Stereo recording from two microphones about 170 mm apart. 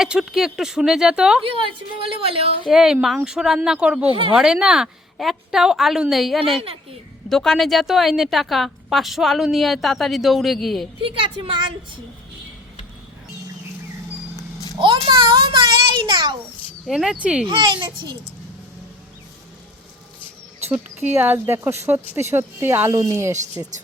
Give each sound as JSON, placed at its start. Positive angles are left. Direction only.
{"t": 0.0, "sound": "a woman's voice", "side_deg": -5}
{"t": 1.5, "sound": "a woman's voice", "side_deg": -30}
{"t": 2.6, "sound": "a woman's voice", "side_deg": -5}
{"t": 11.0, "sound": "a woman's voice", "side_deg": -30}
{"t": 14.8, "sound": "a child's voice", "side_deg": -30}
{"t": 16.8, "sound": "a woman's voice", "side_deg": 0}
{"t": 17.4, "sound": "a child's voice", "side_deg": -25}
{"t": 21.0, "sound": "speech", "side_deg": -10}